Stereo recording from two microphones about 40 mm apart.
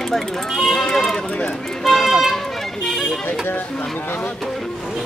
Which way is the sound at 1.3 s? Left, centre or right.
Left.